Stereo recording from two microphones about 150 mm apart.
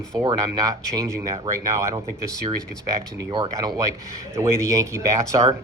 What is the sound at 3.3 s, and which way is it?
Speech, 35° right (ahead or behind).